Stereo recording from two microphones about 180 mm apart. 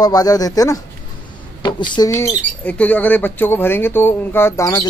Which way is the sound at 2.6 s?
10° left (ahead or behind).